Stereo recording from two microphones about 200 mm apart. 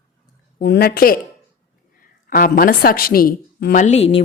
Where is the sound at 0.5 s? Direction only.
55° left (ahead or behind).